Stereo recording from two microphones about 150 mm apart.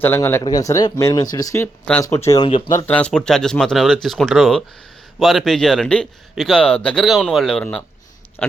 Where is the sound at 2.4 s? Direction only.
40° left (ahead or behind).